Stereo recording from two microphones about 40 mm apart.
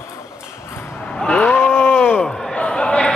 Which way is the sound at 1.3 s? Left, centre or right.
Left.